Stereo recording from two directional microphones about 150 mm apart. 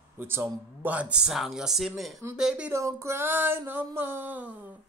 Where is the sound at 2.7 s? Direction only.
20° right (ahead or behind).